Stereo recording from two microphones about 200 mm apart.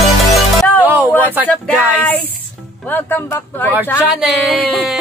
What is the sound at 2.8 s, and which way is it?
Speech, 10° left (ahead or behind).